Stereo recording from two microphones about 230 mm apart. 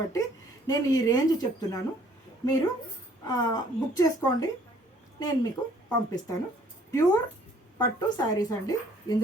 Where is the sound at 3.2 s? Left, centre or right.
Centre.